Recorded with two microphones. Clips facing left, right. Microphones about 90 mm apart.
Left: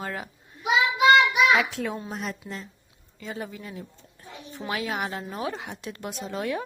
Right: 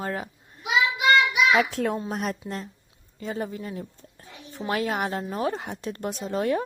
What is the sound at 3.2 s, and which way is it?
A woman's voice, 40° right (ahead or behind).